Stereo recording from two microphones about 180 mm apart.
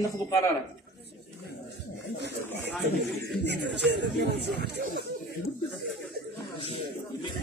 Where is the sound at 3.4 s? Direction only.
70° right (ahead or behind).